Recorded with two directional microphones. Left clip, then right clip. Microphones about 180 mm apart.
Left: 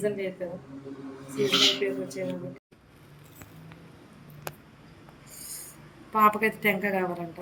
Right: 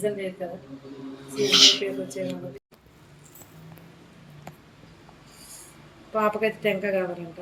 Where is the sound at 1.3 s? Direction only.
Centre (ahead or behind).